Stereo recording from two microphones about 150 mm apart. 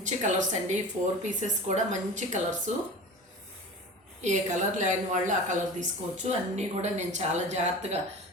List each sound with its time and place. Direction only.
0.0 s a woman's voice: 55° right (ahead or behind)
4.2 s a woman's voice: 55° right (ahead or behind)